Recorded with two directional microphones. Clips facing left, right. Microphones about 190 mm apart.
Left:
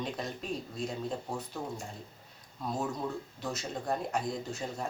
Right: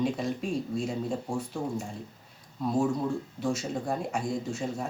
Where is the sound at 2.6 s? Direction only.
10° right (ahead or behind).